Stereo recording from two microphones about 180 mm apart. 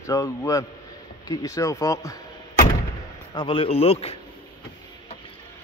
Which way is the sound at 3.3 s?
25° left (ahead or behind).